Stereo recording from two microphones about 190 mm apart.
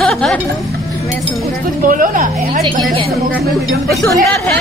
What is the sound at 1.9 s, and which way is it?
Speech, 45° right (ahead or behind).